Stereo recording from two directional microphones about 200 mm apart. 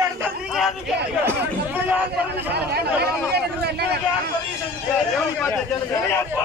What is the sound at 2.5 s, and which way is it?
Speech, 55° right (ahead or behind).